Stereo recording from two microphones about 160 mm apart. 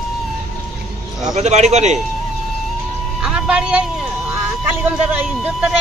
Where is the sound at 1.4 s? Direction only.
45° right (ahead or behind).